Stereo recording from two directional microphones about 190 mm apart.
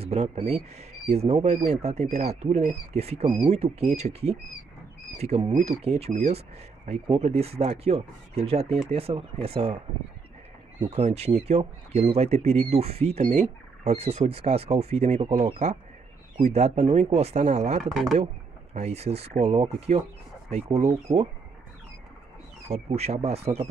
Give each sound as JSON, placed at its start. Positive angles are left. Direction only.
{"t": 0.0, "sound": "speech", "side_deg": -30}
{"t": 10.8, "sound": "speech", "side_deg": -30}
{"t": 22.7, "sound": "speech", "side_deg": -35}